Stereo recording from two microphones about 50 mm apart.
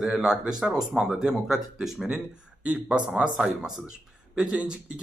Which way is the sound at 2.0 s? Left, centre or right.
Centre.